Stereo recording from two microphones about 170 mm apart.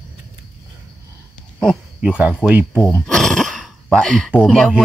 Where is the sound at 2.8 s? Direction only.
5° left (ahead or behind).